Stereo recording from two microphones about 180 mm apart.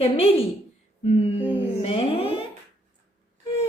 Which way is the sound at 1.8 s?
30° left (ahead or behind).